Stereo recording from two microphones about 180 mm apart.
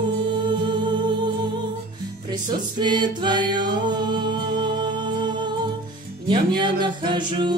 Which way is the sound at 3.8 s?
25° right (ahead or behind).